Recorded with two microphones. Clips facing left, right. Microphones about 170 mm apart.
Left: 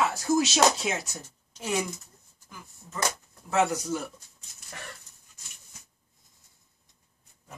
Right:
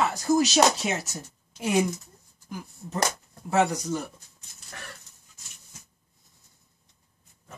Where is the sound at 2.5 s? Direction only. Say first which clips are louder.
Right 9 dB; 75° right (ahead or behind).